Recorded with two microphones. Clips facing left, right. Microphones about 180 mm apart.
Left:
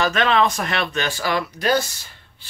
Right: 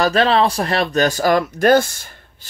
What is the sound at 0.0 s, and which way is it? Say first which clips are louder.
Speech: right 4 dB; 35° right (ahead or behind).